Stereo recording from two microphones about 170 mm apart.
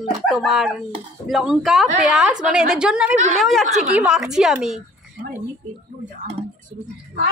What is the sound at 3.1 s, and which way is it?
Speech, 45° right (ahead or behind).